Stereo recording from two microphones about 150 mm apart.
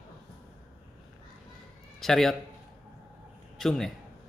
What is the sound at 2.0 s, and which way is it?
Speech, centre (ahead or behind).